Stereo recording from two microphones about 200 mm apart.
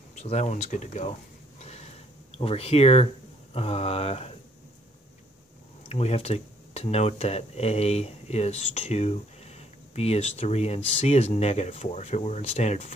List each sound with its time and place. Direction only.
0.1 s speech: 35° left (ahead or behind)
1.6 s a sound: 35° left (ahead or behind)
2.3 s speech: 30° left (ahead or behind)
5.9 s speech: 30° left (ahead or behind)